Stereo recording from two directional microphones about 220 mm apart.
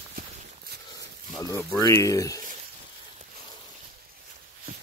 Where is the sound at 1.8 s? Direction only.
15° left (ahead or behind).